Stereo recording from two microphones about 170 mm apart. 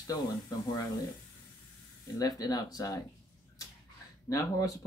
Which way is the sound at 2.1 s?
20° left (ahead or behind).